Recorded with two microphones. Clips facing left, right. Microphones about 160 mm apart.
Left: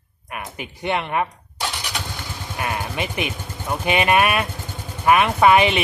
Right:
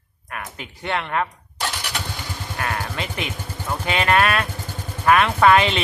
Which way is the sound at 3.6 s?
15° left (ahead or behind).